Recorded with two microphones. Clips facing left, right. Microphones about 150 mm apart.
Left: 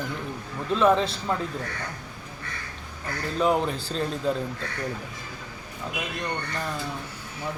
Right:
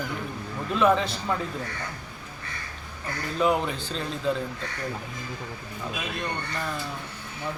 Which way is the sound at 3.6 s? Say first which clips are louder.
Left 3 dB; 35° left (ahead or behind).